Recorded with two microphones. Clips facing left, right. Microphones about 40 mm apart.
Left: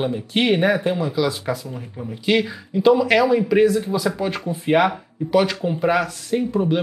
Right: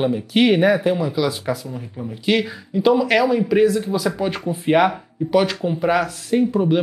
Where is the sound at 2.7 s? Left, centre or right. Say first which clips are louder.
Left 1 dB; centre.